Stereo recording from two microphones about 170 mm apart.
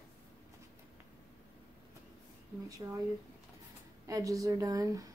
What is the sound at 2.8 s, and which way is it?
Speech, 25° right (ahead or behind).